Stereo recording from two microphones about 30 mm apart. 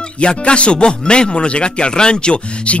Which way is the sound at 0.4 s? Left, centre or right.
Left.